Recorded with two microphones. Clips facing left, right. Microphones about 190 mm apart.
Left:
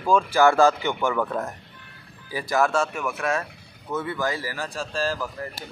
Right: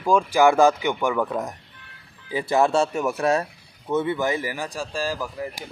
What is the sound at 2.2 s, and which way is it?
Speech, 25° right (ahead or behind).